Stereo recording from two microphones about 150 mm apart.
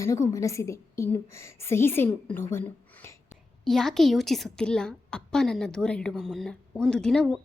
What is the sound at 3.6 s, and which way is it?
A woman's voice, centre (ahead or behind).